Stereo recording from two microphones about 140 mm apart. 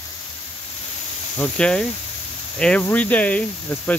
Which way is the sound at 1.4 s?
5° left (ahead or behind).